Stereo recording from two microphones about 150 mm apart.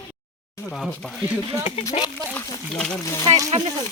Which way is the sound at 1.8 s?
25° left (ahead or behind).